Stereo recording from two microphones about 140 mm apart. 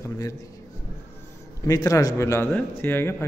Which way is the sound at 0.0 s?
25° left (ahead or behind).